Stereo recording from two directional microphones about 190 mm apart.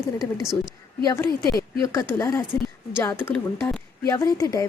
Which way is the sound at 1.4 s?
55° left (ahead or behind).